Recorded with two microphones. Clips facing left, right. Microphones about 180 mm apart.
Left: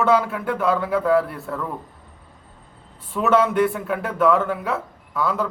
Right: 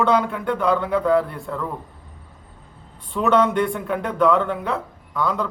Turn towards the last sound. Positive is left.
turn(degrees=5)  # may be behind; listen again after turning